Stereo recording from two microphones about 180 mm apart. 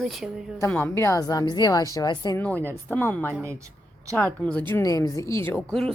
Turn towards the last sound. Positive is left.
turn(degrees=5)  # may be behind; listen again after turning